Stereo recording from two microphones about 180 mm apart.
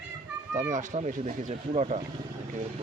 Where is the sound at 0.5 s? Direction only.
45° right (ahead or behind).